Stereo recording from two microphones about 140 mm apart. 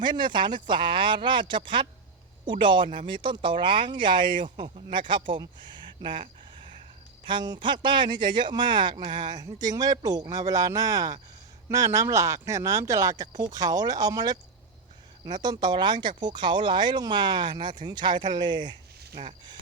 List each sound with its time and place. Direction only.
0.0 s speech: 35° right (ahead or behind)